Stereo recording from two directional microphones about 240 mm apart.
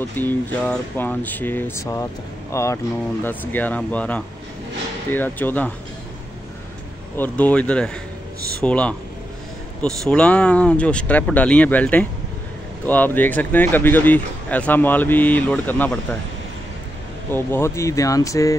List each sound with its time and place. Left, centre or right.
0.1 s speech: centre
7.2 s speech: centre
17.3 s speech: centre